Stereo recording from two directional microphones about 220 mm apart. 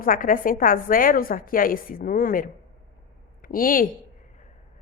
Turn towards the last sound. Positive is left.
turn(degrees=40)  # may be behind; listen again after turning